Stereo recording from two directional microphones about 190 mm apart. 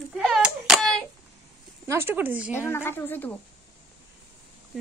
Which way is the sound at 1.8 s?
10° right (ahead or behind).